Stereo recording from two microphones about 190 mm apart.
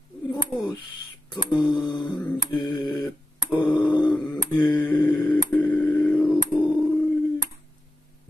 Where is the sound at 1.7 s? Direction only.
25° left (ahead or behind).